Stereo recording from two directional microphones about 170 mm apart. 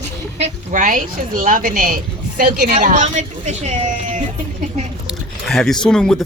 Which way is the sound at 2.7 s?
45° right (ahead or behind).